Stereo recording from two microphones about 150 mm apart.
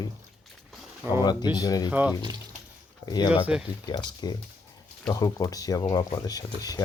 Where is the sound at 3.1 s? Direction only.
30° left (ahead or behind).